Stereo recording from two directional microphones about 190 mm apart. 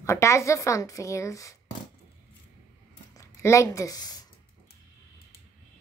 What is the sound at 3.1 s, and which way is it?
Speech, 15° left (ahead or behind).